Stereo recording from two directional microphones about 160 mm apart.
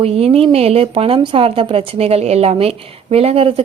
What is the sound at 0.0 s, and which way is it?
A woman's voice, 40° right (ahead or behind).